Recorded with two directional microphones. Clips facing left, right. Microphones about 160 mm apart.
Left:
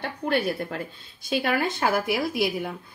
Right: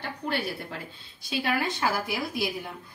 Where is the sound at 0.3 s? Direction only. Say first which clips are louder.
Left 7 dB; 50° left (ahead or behind).